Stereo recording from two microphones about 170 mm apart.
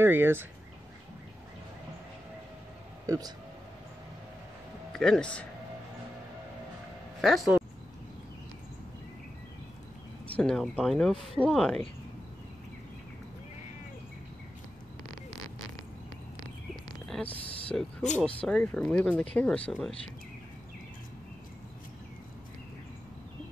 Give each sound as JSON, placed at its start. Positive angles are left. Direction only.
{"t": 0.0, "sound": "speech", "side_deg": -15}
{"t": 3.1, "sound": "speech", "side_deg": -20}
{"t": 4.9, "sound": "speech", "side_deg": 5}
{"t": 7.2, "sound": "speech", "side_deg": 0}
{"t": 10.2, "sound": "speech", "side_deg": 5}
{"t": 17.1, "sound": "a sound", "side_deg": 10}
{"t": 18.1, "sound": "speech", "side_deg": 5}